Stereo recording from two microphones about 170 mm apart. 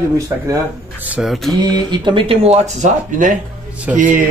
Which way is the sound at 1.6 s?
25° right (ahead or behind).